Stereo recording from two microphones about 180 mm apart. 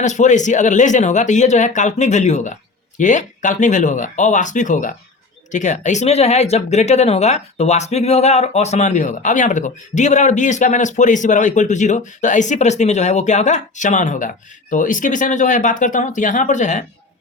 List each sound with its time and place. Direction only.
0.0 s speech: 40° left (ahead or behind)